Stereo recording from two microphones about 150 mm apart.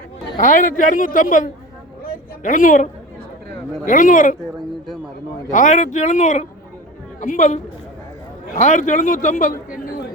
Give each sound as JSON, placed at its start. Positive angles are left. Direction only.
{"t": 0.3, "sound": "a man's voice", "side_deg": 60}
{"t": 2.0, "sound": "a sound", "side_deg": 60}
{"t": 3.8, "sound": "a man's voice", "side_deg": 60}
{"t": 5.5, "sound": "a man's voice", "side_deg": 55}